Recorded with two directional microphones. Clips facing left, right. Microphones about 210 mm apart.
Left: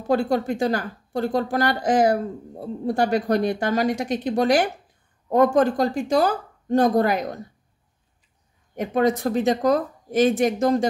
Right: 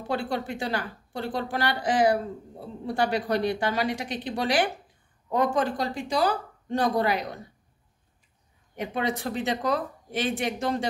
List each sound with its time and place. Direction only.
0.1 s speech: 45° left (ahead or behind)
8.7 s speech: 45° left (ahead or behind)